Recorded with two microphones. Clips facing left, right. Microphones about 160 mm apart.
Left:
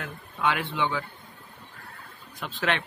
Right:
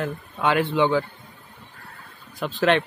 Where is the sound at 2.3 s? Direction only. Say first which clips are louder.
Right 8 dB; 35° right (ahead or behind).